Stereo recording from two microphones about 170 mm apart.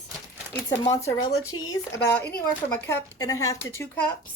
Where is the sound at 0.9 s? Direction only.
20° left (ahead or behind).